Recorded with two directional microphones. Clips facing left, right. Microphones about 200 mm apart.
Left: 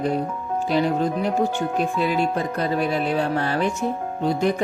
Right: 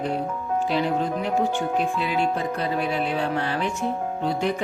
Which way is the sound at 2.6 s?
40° left (ahead or behind).